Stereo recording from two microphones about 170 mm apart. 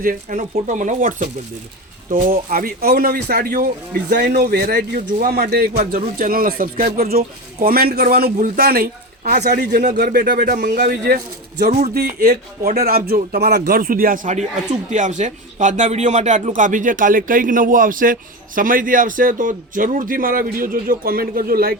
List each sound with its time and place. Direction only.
0.0 s speech: 55° right (ahead or behind)
4.4 s a man's voice: 70° right (ahead or behind)
9.8 s a man's voice: 60° right (ahead or behind)
11.9 s speech: 60° right (ahead or behind)